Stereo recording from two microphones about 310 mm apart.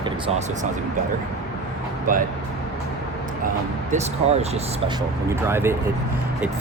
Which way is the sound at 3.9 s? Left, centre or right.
Right.